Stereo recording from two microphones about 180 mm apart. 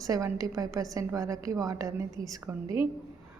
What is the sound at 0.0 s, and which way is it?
A woman's voice, 20° right (ahead or behind).